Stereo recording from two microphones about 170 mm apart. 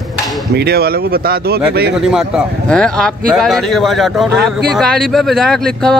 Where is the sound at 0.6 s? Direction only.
70° right (ahead or behind).